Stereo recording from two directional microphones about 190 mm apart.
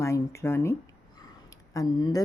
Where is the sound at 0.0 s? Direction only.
15° left (ahead or behind).